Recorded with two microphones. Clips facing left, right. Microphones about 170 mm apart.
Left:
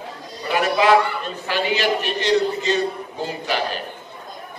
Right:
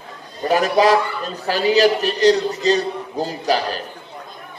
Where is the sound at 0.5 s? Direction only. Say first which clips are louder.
Right 2 dB; 35° right (ahead or behind).